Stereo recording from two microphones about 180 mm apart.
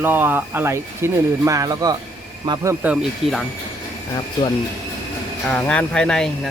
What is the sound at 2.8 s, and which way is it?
Speech, 5° right (ahead or behind).